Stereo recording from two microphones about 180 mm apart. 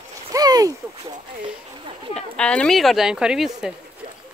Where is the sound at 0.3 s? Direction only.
20° right (ahead or behind).